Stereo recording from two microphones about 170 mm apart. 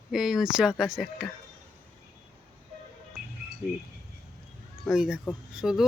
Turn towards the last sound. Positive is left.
turn(degrees=0)  # may be behind; listen again after turning